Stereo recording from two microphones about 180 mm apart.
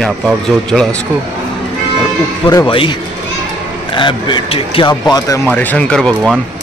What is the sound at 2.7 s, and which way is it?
Speech, 30° left (ahead or behind).